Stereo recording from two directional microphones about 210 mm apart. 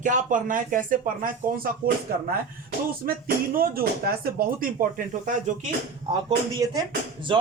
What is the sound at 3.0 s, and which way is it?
Speech, 45° right (ahead or behind).